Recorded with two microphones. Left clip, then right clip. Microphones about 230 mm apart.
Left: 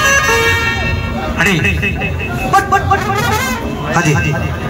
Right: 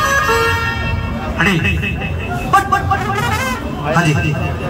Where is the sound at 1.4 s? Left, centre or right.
Left.